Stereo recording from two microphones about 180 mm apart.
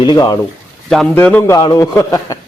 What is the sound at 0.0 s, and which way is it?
Speech, 25° left (ahead or behind).